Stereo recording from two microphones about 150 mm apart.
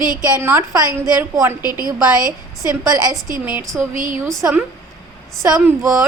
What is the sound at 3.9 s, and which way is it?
Speech, 60° right (ahead or behind).